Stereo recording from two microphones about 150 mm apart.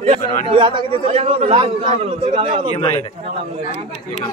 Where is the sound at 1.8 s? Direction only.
50° right (ahead or behind).